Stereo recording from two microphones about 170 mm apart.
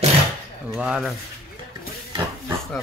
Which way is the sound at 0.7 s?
5° right (ahead or behind).